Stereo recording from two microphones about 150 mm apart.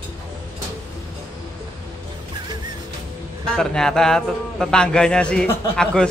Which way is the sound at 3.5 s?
5° left (ahead or behind).